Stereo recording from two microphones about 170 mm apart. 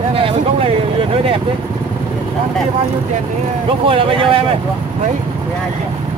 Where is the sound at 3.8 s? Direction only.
30° right (ahead or behind).